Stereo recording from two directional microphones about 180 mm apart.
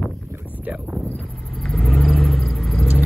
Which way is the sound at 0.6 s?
10° right (ahead or behind).